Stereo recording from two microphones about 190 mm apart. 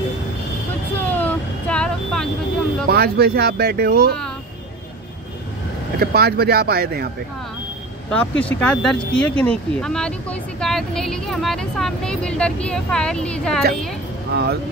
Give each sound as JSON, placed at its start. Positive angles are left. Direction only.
{"t": 1.1, "sound": "vehicle", "side_deg": 5}
{"t": 2.9, "sound": "speech", "side_deg": -55}
{"t": 5.9, "sound": "speech", "side_deg": -55}
{"t": 8.1, "sound": "speech", "side_deg": 5}
{"t": 14.3, "sound": "speech", "side_deg": -60}